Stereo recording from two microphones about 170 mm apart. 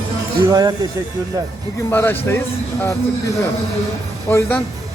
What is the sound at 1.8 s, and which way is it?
Speech, 15° left (ahead or behind).